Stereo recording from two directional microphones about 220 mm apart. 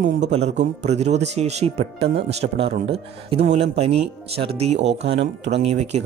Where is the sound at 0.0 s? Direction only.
30° right (ahead or behind).